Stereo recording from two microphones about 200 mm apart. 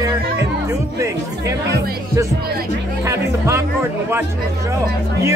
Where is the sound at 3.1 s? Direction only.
15° right (ahead or behind).